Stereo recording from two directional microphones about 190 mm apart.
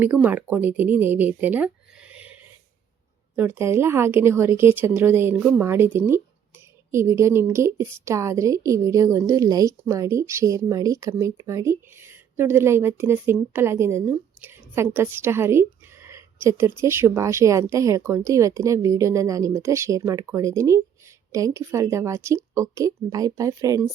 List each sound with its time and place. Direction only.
0.0 s speech: 10° right (ahead or behind)
3.3 s a woman's voice: 10° right (ahead or behind)